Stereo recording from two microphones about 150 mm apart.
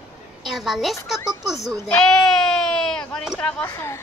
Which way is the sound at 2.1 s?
5° left (ahead or behind).